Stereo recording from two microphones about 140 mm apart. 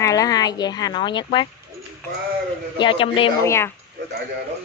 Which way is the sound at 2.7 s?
35° left (ahead or behind).